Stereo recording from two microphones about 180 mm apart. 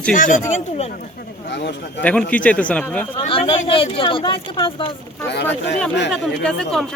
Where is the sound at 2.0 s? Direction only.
5° left (ahead or behind).